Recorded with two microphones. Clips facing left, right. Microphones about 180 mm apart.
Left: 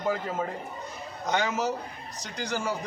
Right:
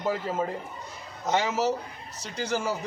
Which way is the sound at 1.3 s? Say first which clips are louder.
Right 2 dB; 5° right (ahead or behind).